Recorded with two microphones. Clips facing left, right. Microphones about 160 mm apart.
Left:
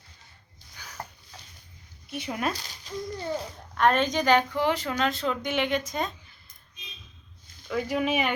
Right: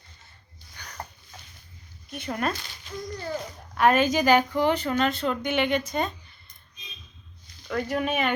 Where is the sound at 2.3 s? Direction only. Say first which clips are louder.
Right 2 dB; 5° left (ahead or behind).